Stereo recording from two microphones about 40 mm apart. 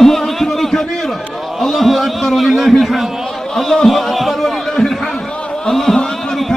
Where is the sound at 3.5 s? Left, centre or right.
Centre.